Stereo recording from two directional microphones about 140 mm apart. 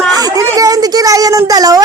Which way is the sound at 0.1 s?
25° right (ahead or behind).